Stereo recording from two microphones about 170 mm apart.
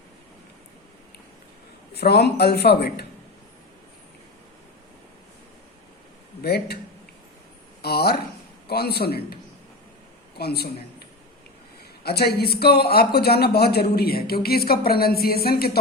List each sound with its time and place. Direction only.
1.9 s speech: 75° left (ahead or behind)
6.4 s speech: 70° left (ahead or behind)
7.8 s a man's voice: 70° left (ahead or behind)
12.0 s speech: 70° left (ahead or behind)